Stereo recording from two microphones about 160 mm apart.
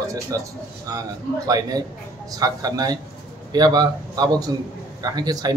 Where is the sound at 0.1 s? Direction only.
20° right (ahead or behind).